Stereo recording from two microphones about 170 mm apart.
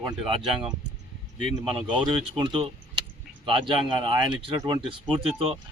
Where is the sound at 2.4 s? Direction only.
30° right (ahead or behind).